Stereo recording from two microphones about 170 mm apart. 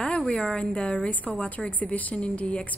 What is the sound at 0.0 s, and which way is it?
A woman's voice, 5° left (ahead or behind).